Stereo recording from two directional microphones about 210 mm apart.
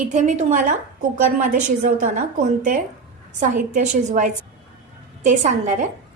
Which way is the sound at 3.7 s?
35° right (ahead or behind).